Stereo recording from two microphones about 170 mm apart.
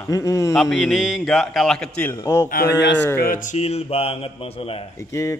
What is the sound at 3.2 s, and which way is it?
Speech, 55° left (ahead or behind).